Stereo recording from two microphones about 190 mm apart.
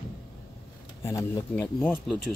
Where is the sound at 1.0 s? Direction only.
15° left (ahead or behind).